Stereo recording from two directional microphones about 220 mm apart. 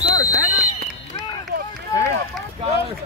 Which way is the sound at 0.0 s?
60° right (ahead or behind).